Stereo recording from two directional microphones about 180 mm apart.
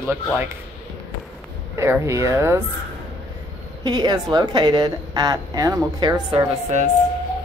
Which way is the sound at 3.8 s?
20° right (ahead or behind).